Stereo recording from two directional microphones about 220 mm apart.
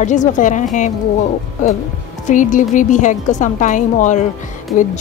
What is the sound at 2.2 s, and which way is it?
A woman's voice, 35° left (ahead or behind).